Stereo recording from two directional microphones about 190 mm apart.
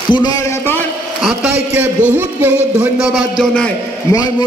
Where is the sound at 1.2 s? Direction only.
5° right (ahead or behind).